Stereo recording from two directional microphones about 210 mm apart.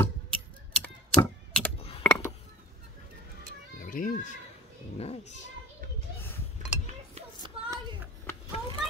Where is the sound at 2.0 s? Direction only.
10° left (ahead or behind).